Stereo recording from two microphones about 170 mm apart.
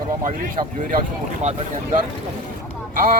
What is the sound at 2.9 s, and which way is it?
Speech, 55° right (ahead or behind).